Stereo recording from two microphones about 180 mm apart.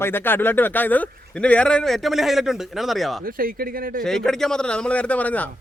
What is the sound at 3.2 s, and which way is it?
Speech, 55° right (ahead or behind).